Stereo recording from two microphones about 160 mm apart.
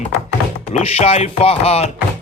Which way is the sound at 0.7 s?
40° left (ahead or behind).